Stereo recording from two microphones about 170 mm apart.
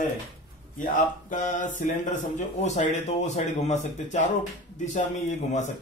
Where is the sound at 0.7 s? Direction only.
50° left (ahead or behind).